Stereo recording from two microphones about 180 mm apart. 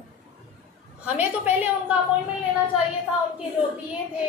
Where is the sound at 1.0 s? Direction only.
10° right (ahead or behind).